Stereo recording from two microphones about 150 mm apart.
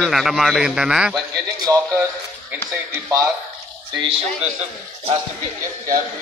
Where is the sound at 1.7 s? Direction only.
25° right (ahead or behind).